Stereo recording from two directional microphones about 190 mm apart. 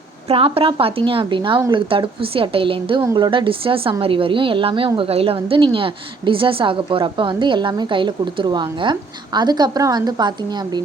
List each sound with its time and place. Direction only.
0.3 s a woman's voice: 30° right (ahead or behind)